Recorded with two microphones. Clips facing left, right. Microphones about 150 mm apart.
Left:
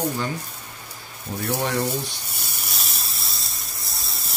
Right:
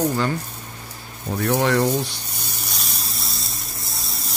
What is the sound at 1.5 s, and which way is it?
Speech, 85° right.